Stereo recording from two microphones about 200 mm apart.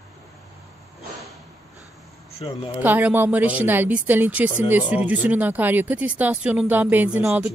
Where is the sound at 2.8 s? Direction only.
10° right (ahead or behind).